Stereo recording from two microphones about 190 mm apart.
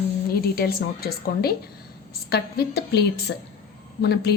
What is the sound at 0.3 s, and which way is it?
A woman's voice, 55° left (ahead or behind).